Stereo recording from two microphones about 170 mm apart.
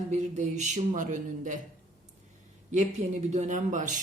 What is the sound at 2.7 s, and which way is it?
Speech, 40° right (ahead or behind).